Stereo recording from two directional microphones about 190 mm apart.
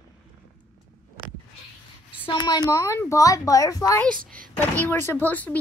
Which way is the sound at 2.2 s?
20° left (ahead or behind).